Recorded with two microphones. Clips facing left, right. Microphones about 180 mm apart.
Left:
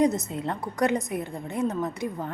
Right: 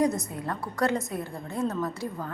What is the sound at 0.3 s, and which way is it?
A woman's voice, 25° left (ahead or behind).